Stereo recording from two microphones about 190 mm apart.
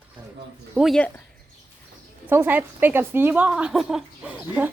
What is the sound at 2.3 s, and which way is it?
A woman's voice, 10° right (ahead or behind).